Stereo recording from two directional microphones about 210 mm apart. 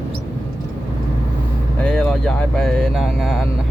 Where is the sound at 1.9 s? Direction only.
5° left (ahead or behind).